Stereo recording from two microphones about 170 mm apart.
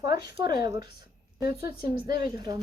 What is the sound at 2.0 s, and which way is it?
Speech, 25° right (ahead or behind).